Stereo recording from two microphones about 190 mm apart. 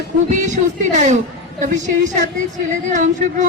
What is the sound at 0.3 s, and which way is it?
A woman's voice, 40° right (ahead or behind).